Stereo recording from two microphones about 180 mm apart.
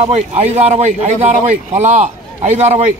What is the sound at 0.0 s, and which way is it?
A man's voice, 40° right (ahead or behind).